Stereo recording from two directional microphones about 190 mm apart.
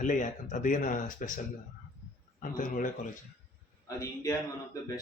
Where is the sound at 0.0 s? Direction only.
40° left (ahead or behind).